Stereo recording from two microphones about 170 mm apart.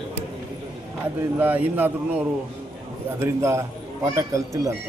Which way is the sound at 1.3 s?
10° right (ahead or behind).